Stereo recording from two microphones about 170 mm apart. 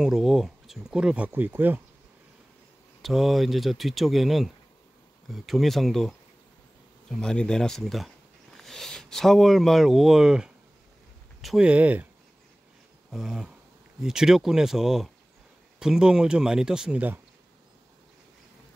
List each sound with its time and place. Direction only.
0.0 s speech: 5° right (ahead or behind)
3.0 s speech: centre (ahead or behind)
13.1 s speech: 5° right (ahead or behind)